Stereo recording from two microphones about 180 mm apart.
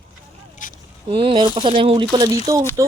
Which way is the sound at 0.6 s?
45° left (ahead or behind).